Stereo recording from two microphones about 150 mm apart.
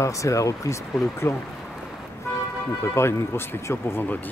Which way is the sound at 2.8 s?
20° left (ahead or behind).